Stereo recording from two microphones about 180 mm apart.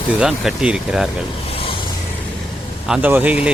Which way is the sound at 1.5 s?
30° left (ahead or behind).